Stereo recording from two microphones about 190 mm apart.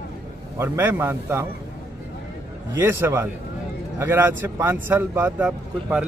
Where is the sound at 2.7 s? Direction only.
10° right (ahead or behind).